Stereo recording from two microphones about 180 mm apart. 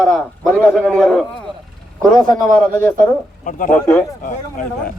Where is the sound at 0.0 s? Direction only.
Centre (ahead or behind).